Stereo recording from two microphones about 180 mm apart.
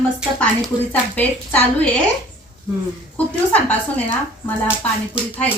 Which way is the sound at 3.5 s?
10° left (ahead or behind).